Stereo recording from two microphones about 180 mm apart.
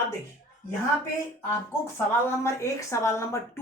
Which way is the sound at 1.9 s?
15° left (ahead or behind).